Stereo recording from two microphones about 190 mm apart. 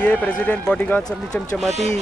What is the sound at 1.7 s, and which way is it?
Speech, 35° right (ahead or behind).